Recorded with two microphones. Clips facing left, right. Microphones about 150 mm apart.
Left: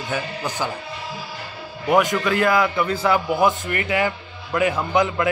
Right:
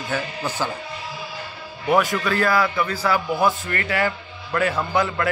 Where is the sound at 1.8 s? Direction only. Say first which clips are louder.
Left 1 dB; 15° left (ahead or behind).